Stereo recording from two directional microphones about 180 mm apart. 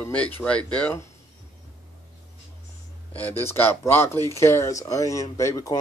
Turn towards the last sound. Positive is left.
turn(degrees=15)  # may be behind; listen again after turning